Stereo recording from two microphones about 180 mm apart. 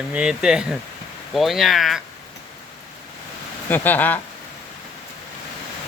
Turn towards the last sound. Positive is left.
turn(degrees=10)  # may be behind; listen again after turning